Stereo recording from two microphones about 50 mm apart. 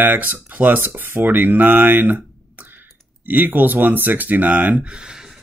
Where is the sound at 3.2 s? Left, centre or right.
Right; by 5.2 s centre.